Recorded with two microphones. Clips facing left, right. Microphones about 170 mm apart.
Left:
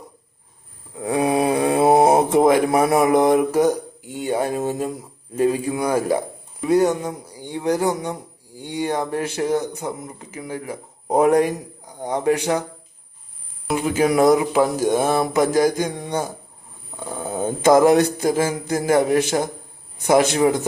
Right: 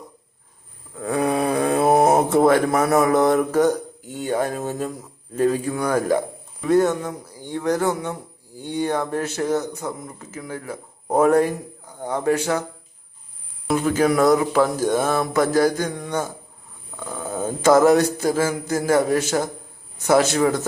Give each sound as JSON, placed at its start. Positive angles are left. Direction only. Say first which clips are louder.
{"t": 0.9, "sound": "speech", "louder": "left 2 dB", "side_deg": 15}
{"t": 13.8, "sound": "speech", "louder": "left 2 dB", "side_deg": 15}